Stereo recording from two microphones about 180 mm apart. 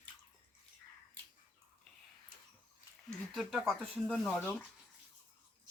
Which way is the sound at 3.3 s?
Centre (ahead or behind).